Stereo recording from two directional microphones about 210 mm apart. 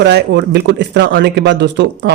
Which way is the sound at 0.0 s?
55° right (ahead or behind).